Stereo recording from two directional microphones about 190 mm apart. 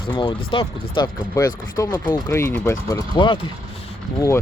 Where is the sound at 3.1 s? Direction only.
25° left (ahead or behind).